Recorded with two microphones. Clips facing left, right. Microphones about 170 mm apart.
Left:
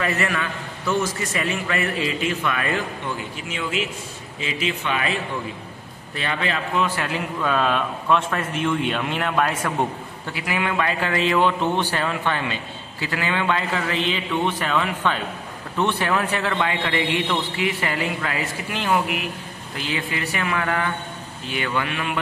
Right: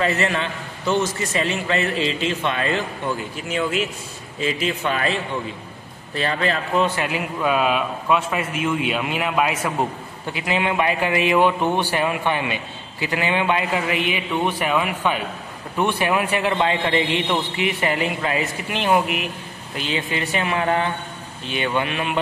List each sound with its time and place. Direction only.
0.0 s a man's voice: 25° right (ahead or behind)
3.4 s a man's voice: 45° right (ahead or behind)
6.1 s a man's voice: 35° right (ahead or behind)
7.0 s a man's voice: 10° right (ahead or behind)
10.3 s a man's voice: 20° right (ahead or behind)